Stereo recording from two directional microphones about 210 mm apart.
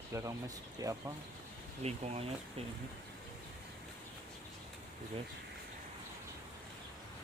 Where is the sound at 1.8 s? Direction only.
30° right (ahead or behind).